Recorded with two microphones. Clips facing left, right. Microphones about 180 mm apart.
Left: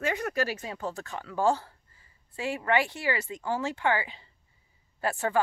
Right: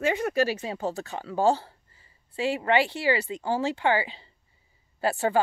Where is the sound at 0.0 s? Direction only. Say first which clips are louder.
Right 5 dB; 25° right (ahead or behind).